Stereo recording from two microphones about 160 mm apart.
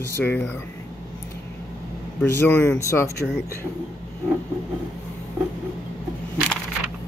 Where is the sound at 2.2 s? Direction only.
15° left (ahead or behind).